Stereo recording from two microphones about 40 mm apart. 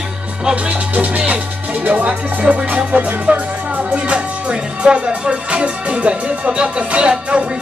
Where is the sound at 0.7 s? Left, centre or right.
Right.